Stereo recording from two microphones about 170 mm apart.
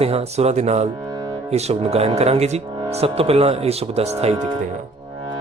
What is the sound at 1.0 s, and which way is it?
Music, 20° right (ahead or behind).